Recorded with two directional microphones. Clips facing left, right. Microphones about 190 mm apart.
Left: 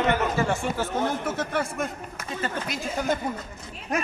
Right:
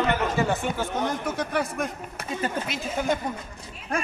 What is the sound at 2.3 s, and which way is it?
Speech, 15° right (ahead or behind).